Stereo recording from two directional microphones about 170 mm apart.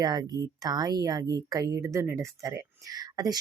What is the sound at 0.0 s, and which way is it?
Speech, 25° right (ahead or behind).